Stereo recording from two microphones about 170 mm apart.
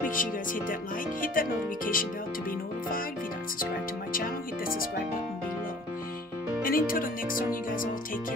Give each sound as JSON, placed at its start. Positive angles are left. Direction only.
{"t": 0.0, "sound": "speech", "side_deg": 55}
{"t": 4.1, "sound": "music", "side_deg": 55}
{"t": 6.6, "sound": "speech", "side_deg": 55}